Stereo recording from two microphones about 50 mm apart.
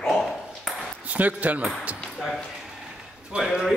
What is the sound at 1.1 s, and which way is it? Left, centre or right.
Speech, right.